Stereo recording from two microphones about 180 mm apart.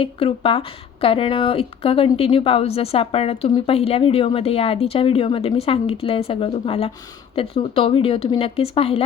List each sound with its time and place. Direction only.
0.0 s a woman's voice: 30° left (ahead or behind)